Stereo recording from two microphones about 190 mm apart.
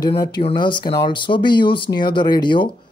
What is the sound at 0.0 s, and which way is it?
Speech, 20° left (ahead or behind).